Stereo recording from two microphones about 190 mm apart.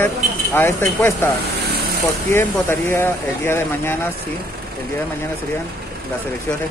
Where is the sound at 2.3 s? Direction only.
10° left (ahead or behind).